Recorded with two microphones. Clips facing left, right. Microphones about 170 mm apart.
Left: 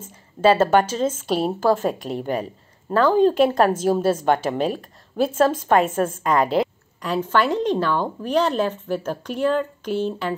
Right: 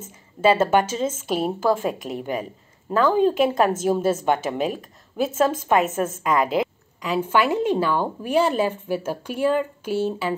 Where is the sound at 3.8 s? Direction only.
45° left (ahead or behind).